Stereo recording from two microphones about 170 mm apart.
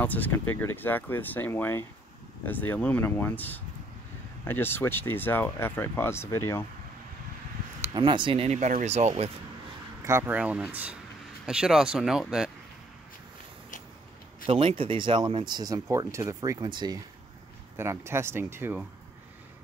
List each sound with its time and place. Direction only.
0.0 s speech: 10° left (ahead or behind)
7.8 s speech: 25° right (ahead or behind)
10.0 s speech: 15° right (ahead or behind)
14.4 s speech: 35° right (ahead or behind)
17.7 s speech: 15° right (ahead or behind)